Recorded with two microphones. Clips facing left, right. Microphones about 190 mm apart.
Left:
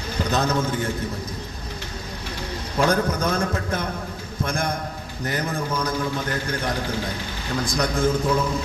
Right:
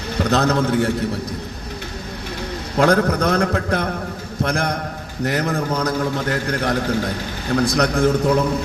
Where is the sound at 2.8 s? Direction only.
60° right (ahead or behind).